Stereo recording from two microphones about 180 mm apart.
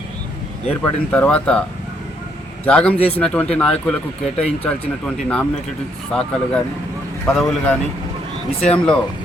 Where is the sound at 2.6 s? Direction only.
5° left (ahead or behind).